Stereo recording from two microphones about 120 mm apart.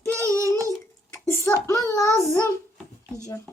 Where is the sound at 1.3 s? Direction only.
20° left (ahead or behind).